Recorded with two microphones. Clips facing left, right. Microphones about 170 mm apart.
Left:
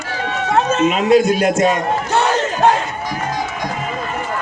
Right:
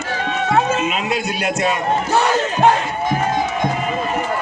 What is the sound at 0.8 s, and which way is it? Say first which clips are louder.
Speech: left 9 dB; 45° left (ahead or behind).